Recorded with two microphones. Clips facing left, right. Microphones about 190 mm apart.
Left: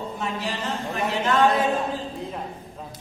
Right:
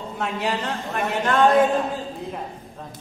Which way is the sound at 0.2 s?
60° right (ahead or behind).